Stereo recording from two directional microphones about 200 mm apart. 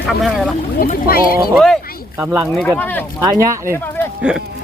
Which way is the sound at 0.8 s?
45° left (ahead or behind).